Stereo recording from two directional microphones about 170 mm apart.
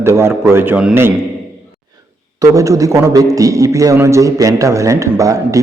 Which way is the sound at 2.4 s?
20° right (ahead or behind).